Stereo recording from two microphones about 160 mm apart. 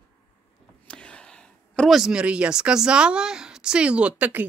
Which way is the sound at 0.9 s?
5° left (ahead or behind).